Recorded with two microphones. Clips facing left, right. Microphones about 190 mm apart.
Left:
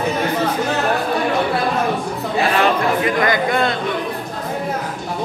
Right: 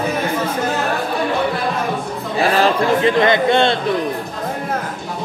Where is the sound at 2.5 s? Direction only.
25° right (ahead or behind).